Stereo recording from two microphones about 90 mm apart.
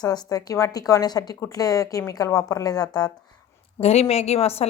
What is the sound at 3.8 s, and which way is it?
Speech, 90° left.